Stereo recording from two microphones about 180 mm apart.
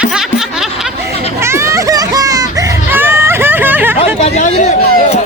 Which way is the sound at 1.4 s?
15° right (ahead or behind).